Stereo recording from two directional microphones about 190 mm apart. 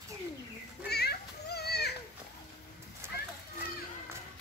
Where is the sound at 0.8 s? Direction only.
60° left (ahead or behind).